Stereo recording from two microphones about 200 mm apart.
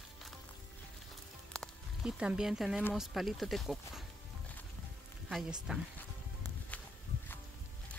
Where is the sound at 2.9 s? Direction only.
Centre (ahead or behind).